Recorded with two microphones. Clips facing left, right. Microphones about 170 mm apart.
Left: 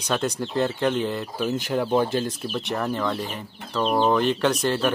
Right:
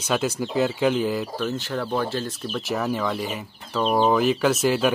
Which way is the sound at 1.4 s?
15° left (ahead or behind).